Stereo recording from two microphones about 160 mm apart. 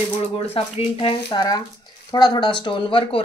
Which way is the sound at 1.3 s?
25° left (ahead or behind).